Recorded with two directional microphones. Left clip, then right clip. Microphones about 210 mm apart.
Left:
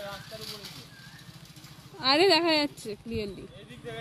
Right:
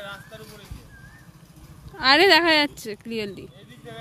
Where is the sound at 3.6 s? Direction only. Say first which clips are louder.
Left 1 dB; 40° left (ahead or behind).